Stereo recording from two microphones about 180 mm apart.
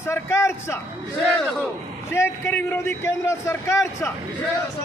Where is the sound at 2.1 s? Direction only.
15° left (ahead or behind).